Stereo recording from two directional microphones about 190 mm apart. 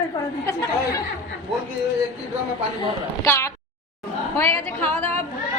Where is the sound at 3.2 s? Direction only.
15° left (ahead or behind).